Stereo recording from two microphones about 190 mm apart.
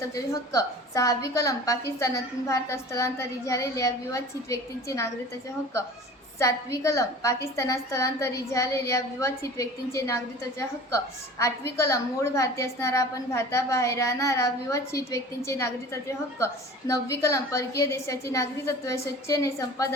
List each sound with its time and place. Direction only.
0.1 s a woman's voice: 15° left (ahead or behind)
6.4 s a woman's voice: 15° left (ahead or behind)